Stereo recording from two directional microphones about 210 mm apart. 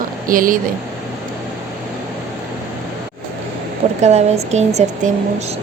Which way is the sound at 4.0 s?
30° right (ahead or behind).